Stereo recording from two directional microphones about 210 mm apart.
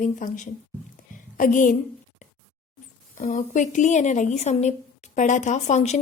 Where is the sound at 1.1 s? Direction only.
40° left (ahead or behind).